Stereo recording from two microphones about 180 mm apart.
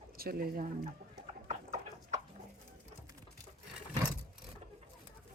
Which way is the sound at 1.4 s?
40° right (ahead or behind).